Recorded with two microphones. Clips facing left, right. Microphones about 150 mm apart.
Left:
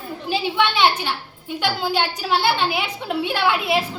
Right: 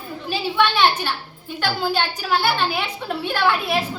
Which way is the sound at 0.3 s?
15° left (ahead or behind).